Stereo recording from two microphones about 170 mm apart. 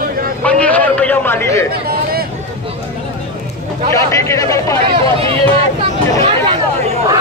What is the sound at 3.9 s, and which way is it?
Speech, 20° left (ahead or behind).